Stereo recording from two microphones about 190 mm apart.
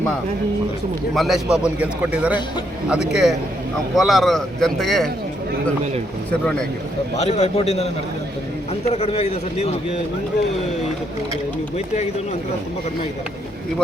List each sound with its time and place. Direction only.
1.1 s a man's voice: centre (ahead or behind)
7.2 s a man's voice: 35° left (ahead or behind)
8.9 s a man's voice: 35° left (ahead or behind)